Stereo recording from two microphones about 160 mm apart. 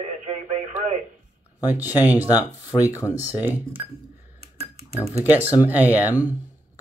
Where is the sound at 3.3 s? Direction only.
15° right (ahead or behind).